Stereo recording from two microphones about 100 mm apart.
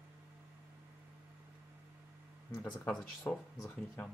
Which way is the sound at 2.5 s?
25° left (ahead or behind).